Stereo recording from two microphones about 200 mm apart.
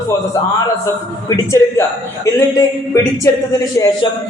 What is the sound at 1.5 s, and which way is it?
A man's voice, 15° left (ahead or behind).